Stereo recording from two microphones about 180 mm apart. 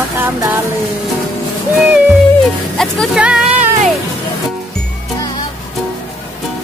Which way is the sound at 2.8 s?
Centre (ahead or behind).